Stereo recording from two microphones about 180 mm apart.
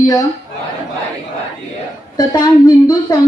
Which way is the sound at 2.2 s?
20° left (ahead or behind).